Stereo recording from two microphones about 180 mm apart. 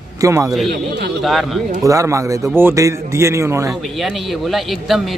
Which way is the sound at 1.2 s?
Centre (ahead or behind).